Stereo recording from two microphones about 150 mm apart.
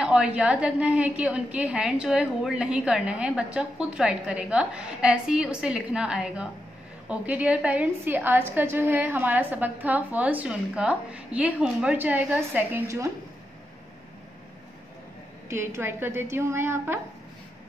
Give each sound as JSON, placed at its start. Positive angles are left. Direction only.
{"t": 0.0, "sound": "a woman's voice", "side_deg": -5}
{"t": 15.5, "sound": "a woman's voice", "side_deg": -15}